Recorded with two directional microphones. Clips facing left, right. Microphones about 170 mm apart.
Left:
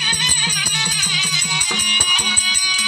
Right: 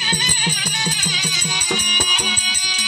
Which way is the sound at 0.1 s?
30° right (ahead or behind).